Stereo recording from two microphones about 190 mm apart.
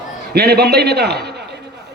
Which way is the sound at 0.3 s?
55° right (ahead or behind).